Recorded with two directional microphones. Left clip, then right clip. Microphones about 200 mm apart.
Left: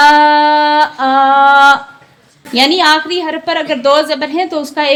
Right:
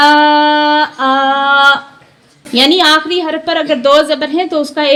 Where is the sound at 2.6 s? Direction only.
15° right (ahead or behind).